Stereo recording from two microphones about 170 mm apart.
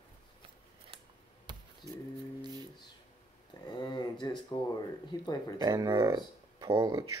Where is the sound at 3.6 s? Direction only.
25° left (ahead or behind).